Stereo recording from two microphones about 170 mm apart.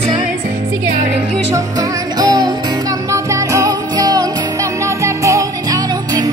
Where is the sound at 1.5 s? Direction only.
20° right (ahead or behind).